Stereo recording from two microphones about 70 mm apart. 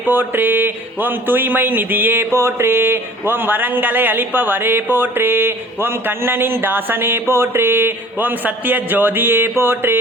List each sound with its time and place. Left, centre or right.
0.0 s speech: right